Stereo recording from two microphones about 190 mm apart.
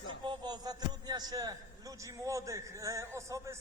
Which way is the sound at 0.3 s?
20° right (ahead or behind).